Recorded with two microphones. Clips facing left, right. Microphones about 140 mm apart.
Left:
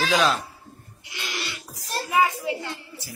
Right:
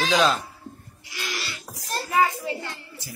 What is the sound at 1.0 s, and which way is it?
Pig, 20° left (ahead or behind).